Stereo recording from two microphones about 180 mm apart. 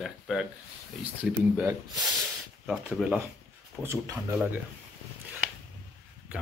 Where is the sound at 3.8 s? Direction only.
15° right (ahead or behind).